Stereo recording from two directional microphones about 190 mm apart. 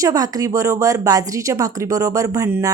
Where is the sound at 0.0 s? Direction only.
20° right (ahead or behind).